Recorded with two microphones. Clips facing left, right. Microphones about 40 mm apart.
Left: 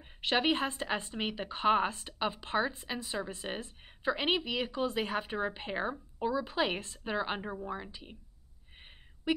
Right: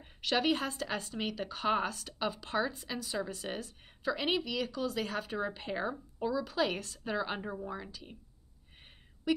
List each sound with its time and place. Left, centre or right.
0.0 s a woman's voice: left